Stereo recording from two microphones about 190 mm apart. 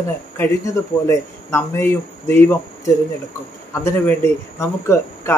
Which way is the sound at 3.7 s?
15° left (ahead or behind).